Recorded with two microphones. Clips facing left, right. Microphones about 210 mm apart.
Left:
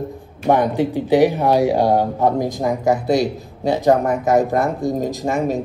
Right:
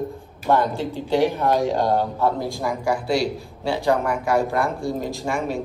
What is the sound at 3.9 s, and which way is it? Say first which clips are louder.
Speech: left 5 dB; 40° left (ahead or behind).